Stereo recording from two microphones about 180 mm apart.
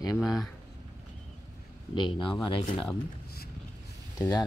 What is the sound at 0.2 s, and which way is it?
Speech, centre (ahead or behind).